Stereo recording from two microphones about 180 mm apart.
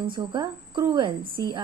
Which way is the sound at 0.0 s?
25° right (ahead or behind).